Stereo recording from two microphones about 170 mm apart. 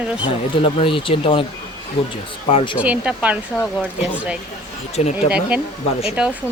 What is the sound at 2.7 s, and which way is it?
Speech, 10° right (ahead or behind).